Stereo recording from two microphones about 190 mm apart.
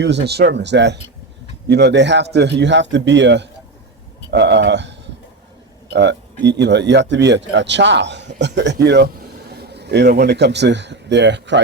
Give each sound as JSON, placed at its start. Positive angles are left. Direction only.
{"t": 0.0, "sound": "a man's voice", "side_deg": -60}